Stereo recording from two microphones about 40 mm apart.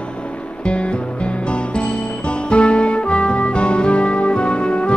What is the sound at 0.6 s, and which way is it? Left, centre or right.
Music, left.